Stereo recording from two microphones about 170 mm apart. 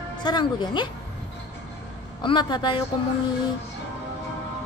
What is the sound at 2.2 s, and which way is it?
Speech, 25° left (ahead or behind).